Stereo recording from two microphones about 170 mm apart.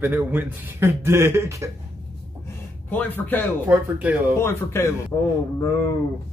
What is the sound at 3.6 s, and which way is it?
Speech, 10° right (ahead or behind).